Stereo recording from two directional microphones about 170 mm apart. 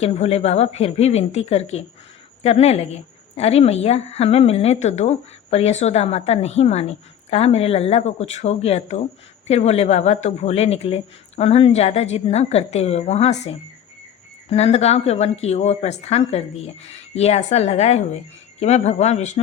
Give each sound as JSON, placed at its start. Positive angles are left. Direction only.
{"t": 0.0, "sound": "a woman's voice", "side_deg": 35}